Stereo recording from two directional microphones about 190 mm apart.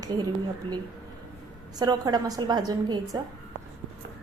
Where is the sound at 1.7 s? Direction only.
20° right (ahead or behind).